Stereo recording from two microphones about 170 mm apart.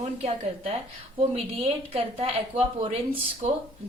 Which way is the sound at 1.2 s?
35° right (ahead or behind).